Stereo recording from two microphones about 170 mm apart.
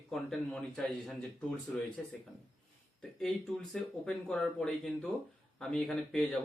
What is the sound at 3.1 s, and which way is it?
Speech, centre (ahead or behind).